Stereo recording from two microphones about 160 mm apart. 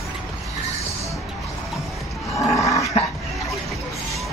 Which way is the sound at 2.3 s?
20° left (ahead or behind).